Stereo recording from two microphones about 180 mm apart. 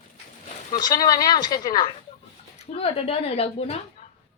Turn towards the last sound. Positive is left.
turn(degrees=35)  # may be behind; listen again after turning